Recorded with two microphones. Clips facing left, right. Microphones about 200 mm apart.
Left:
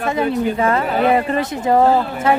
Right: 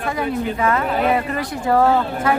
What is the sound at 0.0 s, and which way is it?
Speech, 25° left (ahead or behind).